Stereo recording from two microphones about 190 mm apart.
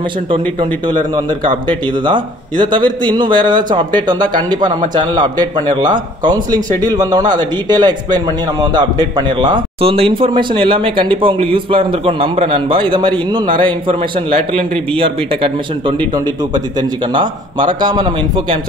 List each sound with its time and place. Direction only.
0.3 s a man's voice: 25° right (ahead or behind)
17.1 s a man's voice: 25° right (ahead or behind)